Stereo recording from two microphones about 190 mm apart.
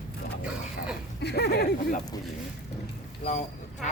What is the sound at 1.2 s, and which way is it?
Speech, 60° left (ahead or behind).